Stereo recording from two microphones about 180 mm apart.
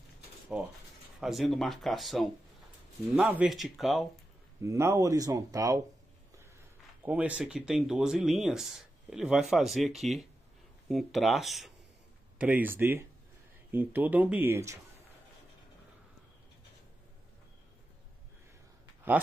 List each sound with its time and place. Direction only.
1.2 s speech: centre (ahead or behind)
4.6 s speech: 15° right (ahead or behind)
7.1 s speech: 5° right (ahead or behind)